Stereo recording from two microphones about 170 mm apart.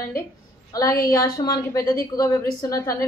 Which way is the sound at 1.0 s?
20° left (ahead or behind).